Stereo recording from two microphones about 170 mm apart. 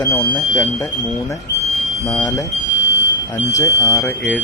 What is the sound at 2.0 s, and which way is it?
Speech, 20° left (ahead or behind).